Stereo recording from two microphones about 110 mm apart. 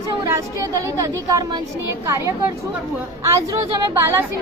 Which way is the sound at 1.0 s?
30° right (ahead or behind).